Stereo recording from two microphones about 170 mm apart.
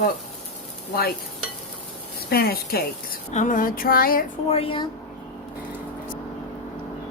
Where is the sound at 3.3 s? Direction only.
50° left (ahead or behind).